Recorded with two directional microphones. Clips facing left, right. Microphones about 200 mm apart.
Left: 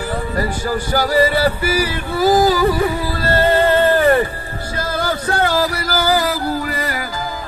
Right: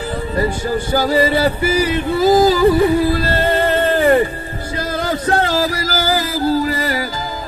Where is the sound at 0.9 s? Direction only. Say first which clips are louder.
Right 1 dB; 20° right (ahead or behind).